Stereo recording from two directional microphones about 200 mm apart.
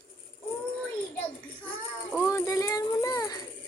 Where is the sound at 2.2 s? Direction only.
15° left (ahead or behind).